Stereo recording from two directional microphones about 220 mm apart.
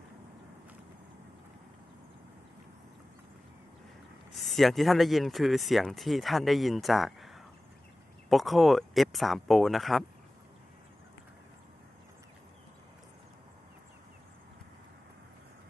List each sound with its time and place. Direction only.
4.3 s speech: centre (ahead or behind)